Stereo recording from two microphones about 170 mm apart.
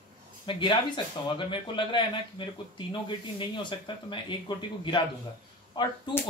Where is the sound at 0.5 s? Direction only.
30° left (ahead or behind).